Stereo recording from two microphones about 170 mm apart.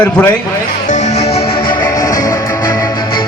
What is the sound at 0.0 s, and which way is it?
Speech, 10° left (ahead or behind).